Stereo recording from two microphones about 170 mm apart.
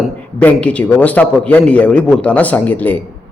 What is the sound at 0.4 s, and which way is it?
A man's voice, 10° left (ahead or behind).